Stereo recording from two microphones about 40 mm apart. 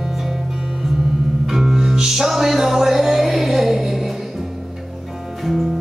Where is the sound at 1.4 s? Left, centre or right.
Centre.